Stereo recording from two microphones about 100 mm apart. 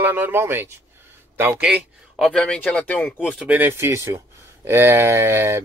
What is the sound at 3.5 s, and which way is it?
Speech, 20° right (ahead or behind).